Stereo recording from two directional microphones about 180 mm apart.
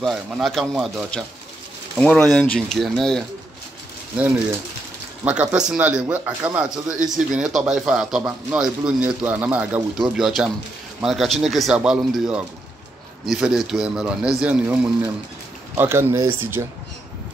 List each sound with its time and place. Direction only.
0.0 s speech: centre (ahead or behind)
5.2 s speech: 10° right (ahead or behind)